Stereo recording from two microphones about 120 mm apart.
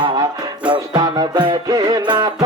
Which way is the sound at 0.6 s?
40° right (ahead or behind).